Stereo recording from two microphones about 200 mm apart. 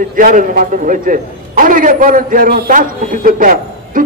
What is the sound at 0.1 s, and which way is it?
A man's voice, 45° right (ahead or behind).